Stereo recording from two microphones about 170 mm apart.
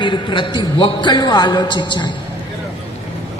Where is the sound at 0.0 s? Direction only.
30° left (ahead or behind).